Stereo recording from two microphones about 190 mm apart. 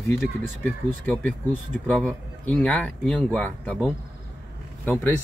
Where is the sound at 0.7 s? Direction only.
10° left (ahead or behind).